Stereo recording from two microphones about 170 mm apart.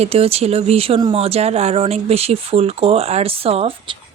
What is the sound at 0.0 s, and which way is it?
Speech, 35° right (ahead or behind).